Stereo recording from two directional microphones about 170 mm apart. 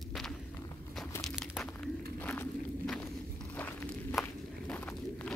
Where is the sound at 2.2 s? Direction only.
10° left (ahead or behind).